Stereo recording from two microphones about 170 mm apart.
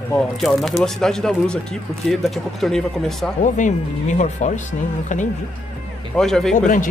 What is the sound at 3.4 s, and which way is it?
Speech, 45° left (ahead or behind).